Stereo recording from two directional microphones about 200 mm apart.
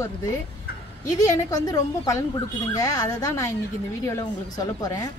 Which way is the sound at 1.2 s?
15° left (ahead or behind).